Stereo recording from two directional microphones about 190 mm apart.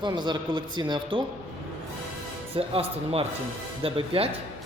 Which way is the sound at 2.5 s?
30° right (ahead or behind).